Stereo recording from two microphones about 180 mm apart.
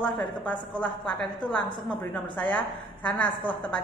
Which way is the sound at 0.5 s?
25° left (ahead or behind).